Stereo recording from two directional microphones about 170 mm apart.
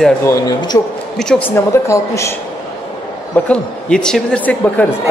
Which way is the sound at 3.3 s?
5° left (ahead or behind).